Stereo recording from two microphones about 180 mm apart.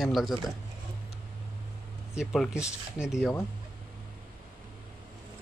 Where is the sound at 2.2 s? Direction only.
5° right (ahead or behind).